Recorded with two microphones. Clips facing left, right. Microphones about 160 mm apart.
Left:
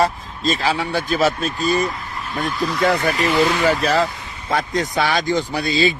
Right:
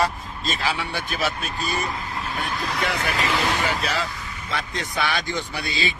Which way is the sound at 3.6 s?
40° left (ahead or behind).